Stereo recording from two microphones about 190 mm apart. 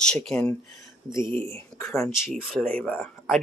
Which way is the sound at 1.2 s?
25° right (ahead or behind).